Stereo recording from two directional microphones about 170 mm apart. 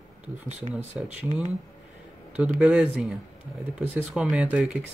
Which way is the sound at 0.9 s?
10° right (ahead or behind).